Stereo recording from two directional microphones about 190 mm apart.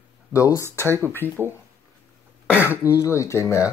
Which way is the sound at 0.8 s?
15° right (ahead or behind).